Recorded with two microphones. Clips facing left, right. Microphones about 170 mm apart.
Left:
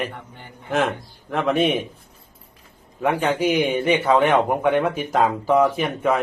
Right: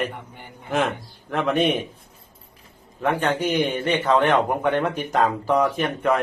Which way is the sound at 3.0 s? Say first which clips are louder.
Left 2 dB; 10° left (ahead or behind).